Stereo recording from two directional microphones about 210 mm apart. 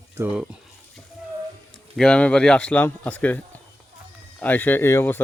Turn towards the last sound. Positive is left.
turn(degrees=10)  # may be behind; listen again after turning